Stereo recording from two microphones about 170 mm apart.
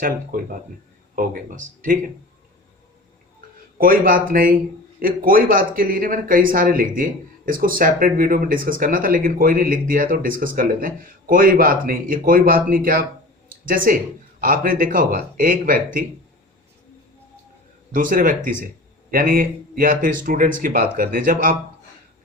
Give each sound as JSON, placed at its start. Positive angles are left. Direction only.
{"t": 0.3, "sound": "speech", "side_deg": -50}
{"t": 3.8, "sound": "speech", "side_deg": -55}
{"t": 17.9, "sound": "speech", "side_deg": -55}